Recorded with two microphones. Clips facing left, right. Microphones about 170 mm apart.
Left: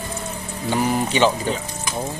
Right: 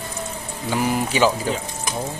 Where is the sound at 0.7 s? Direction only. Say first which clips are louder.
Left 1 dB; 5° right (ahead or behind).